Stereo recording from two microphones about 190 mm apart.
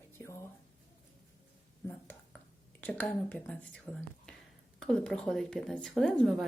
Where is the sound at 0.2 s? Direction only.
15° left (ahead or behind).